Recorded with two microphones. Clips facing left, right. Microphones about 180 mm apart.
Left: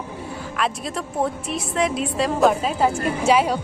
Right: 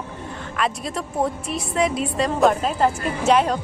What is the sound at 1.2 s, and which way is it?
A woman's voice, centre (ahead or behind).